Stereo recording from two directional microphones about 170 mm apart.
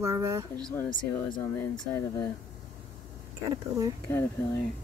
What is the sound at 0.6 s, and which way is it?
Speech, 5° left (ahead or behind).